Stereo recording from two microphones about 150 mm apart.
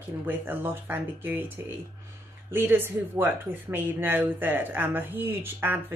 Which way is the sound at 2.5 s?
15° right (ahead or behind).